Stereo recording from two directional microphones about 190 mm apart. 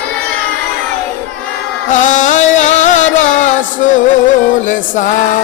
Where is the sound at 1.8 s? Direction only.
40° left (ahead or behind).